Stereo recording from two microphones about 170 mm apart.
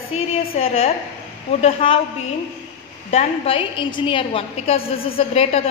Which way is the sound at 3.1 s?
35° left (ahead or behind).